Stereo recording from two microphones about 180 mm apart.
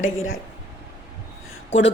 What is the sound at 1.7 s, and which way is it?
Speech, 90° left.